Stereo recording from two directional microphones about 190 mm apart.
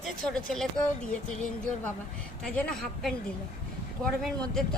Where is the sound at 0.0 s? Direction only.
Centre (ahead or behind).